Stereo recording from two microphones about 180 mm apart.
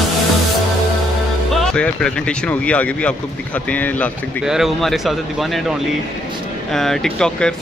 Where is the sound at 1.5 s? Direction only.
5° left (ahead or behind).